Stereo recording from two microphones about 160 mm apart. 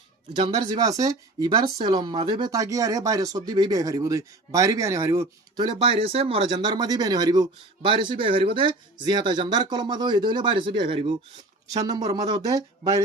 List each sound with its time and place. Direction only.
0.3 s speech: 25° right (ahead or behind)